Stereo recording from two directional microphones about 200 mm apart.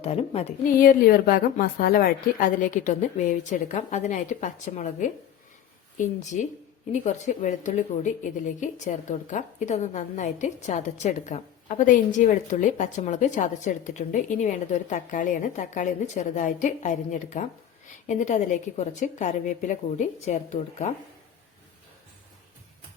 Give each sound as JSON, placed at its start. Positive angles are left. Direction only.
{"t": 0.0, "sound": "a woman's voice", "side_deg": 30}
{"t": 0.8, "sound": "a woman's voice", "side_deg": 45}